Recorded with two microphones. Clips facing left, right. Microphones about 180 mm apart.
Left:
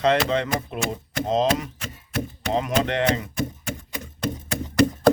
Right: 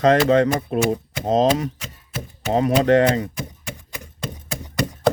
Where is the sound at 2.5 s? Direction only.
40° right (ahead or behind).